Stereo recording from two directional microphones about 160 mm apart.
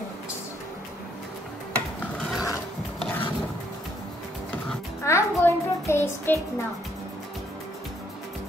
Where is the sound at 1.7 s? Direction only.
10° left (ahead or behind).